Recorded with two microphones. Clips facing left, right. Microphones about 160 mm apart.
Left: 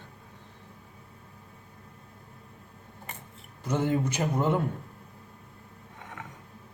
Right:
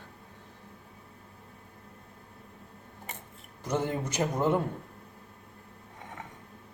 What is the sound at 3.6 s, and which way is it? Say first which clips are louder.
Speech: left 3 dB; 10° right (ahead or behind).